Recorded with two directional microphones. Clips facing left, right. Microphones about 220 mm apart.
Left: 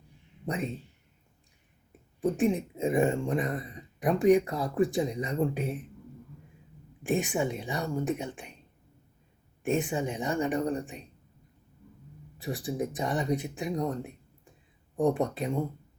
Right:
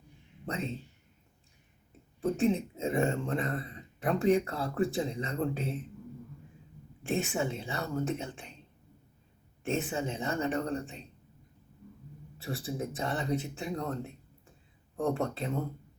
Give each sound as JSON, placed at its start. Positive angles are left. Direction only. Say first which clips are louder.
{"t": 0.4, "sound": "speech", "louder": "left 3 dB", "side_deg": 15}
{"t": 2.2, "sound": "speech", "louder": "left 2 dB", "side_deg": 15}
{"t": 7.0, "sound": "speech", "louder": "left 3 dB", "side_deg": 15}
{"t": 9.6, "sound": "speech", "louder": "left 4 dB", "side_deg": 15}
{"t": 12.4, "sound": "speech", "louder": "left 4 dB", "side_deg": 15}